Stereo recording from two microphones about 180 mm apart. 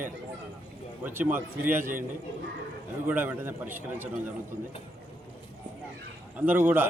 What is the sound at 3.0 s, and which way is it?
A man's voice, 10° right (ahead or behind).